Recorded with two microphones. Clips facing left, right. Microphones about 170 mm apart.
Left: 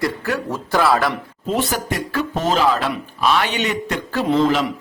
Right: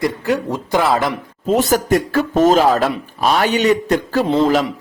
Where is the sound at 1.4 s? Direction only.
45° right (ahead or behind).